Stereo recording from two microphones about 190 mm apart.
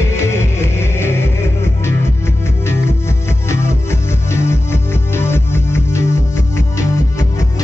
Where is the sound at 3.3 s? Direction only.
15° left (ahead or behind).